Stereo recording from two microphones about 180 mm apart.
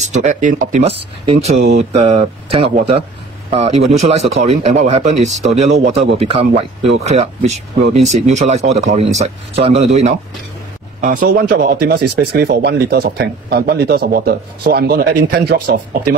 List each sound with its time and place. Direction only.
0.1 s speech: 45° right (ahead or behind)
11.0 s speech: 50° right (ahead or behind)